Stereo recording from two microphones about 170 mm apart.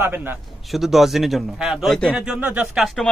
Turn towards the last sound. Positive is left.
turn(degrees=0)  # may be behind; listen again after turning